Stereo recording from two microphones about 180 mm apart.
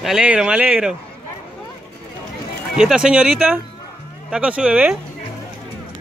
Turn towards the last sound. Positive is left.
turn(degrees=-5)  # may be behind; listen again after turning